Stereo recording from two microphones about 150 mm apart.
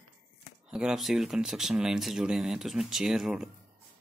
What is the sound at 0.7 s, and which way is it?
Speech, 5° right (ahead or behind).